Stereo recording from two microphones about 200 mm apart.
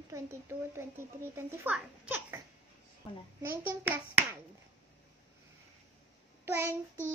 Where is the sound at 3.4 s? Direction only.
10° right (ahead or behind).